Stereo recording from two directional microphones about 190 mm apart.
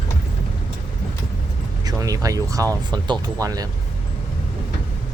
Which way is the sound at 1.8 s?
20° right (ahead or behind).